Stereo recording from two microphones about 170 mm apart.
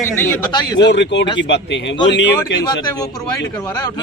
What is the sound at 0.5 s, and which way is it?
Speech, 25° left (ahead or behind).